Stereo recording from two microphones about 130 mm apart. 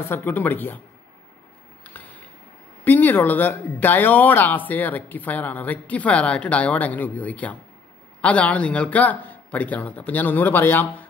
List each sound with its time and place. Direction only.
0.0 s speech: 15° left (ahead or behind)
2.0 s a sound: 10° left (ahead or behind)
2.8 s speech: 15° left (ahead or behind)